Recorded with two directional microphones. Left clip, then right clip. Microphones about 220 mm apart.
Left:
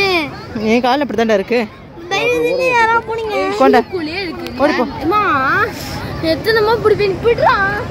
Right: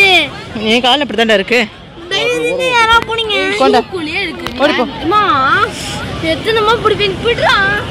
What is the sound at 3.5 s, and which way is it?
Speech, 15° left (ahead or behind).